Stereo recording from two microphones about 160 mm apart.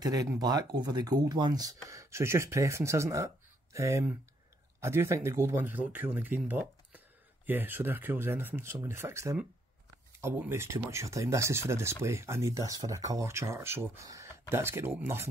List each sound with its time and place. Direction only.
0.0 s speech: 20° right (ahead or behind)